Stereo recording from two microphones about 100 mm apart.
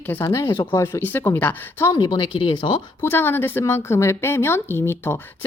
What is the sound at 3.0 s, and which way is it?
Speech, 25° left (ahead or behind).